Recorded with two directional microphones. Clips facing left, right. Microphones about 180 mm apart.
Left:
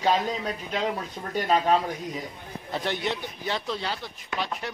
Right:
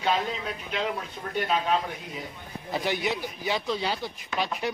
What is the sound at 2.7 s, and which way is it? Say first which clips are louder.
A man's voice: right 1 dB; 5° right (ahead or behind).